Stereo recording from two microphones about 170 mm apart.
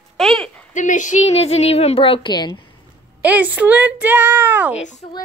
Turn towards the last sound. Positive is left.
turn(degrees=-10)  # may be behind; listen again after turning